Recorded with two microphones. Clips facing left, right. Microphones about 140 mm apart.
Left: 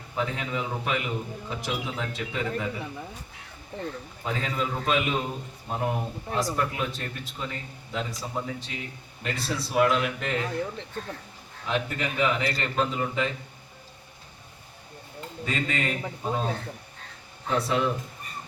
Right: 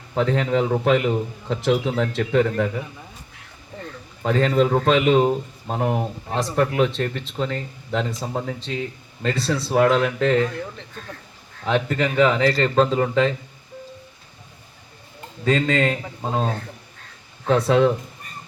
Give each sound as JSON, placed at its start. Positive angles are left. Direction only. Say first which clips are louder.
{"t": 0.1, "sound": "a man's voice", "louder": "right 10 dB", "side_deg": -90}
{"t": 4.2, "sound": "a man's voice", "louder": "right 12 dB", "side_deg": -75}
{"t": 9.3, "sound": "a man's voice", "louder": "right 7 dB", "side_deg": -30}
{"t": 9.7, "sound": "a man's voice", "louder": "right 6 dB", "side_deg": -90}
{"t": 11.6, "sound": "a man's voice", "louder": "right 8 dB", "side_deg": -90}
{"t": 15.4, "sound": "a man's voice", "louder": "right 10 dB", "side_deg": -90}